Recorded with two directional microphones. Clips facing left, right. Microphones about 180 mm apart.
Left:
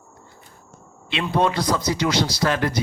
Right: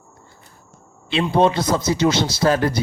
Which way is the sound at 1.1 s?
30° right (ahead or behind).